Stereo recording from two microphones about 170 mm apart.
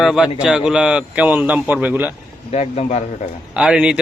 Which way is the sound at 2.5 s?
40° left (ahead or behind).